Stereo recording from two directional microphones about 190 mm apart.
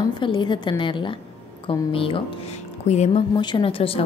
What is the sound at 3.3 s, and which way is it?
Speech, 25° left (ahead or behind).